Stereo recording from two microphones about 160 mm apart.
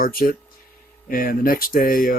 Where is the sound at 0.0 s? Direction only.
65° left (ahead or behind).